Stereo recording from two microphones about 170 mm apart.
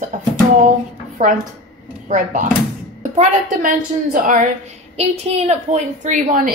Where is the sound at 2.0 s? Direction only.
45° right (ahead or behind).